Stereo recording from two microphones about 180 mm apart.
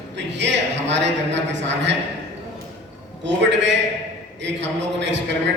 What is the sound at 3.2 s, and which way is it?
A man's voice, 80° right.